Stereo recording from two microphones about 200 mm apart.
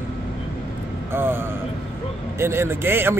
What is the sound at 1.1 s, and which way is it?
Speech, 10° right (ahead or behind).